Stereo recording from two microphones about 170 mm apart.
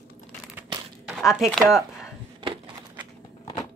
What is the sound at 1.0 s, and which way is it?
Speech, 5° right (ahead or behind).